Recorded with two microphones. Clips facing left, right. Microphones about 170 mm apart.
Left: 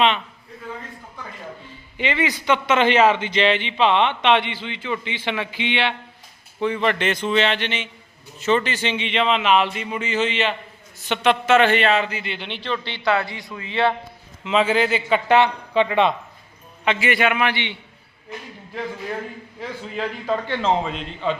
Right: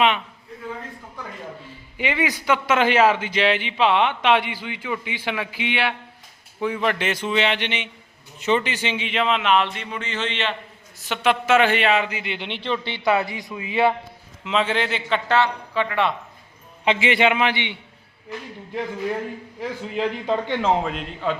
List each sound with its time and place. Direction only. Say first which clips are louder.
2.0 s a man's voice: left 1 dB; 10° right (ahead or behind); by 10.5 s 5° left (ahead or behind)
11.0 s a man's voice: left 2 dB; 5° right (ahead or behind)
14.4 s speech: left 3 dB; 5° left (ahead or behind)
15.3 s speech: left 4 dB; 20° left (ahead or behind)
16.8 s a man's voice: right 1 dB; 25° right (ahead or behind)
19.5 s a man's voice: right 2 dB; 15° right (ahead or behind)